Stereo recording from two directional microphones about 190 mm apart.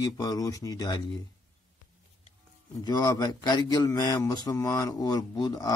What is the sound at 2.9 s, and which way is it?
Speech, 20° left (ahead or behind).